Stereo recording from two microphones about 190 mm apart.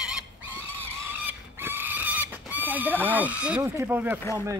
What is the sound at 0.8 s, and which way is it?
Vehicle, 10° right (ahead or behind).